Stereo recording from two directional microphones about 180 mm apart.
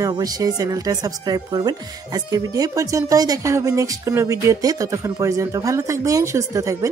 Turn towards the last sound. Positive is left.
turn(degrees=-15)  # may be behind; listen again after turning